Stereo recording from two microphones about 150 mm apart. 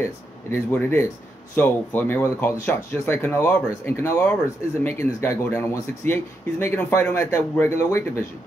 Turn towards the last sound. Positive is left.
turn(degrees=20)  # may be behind; listen again after turning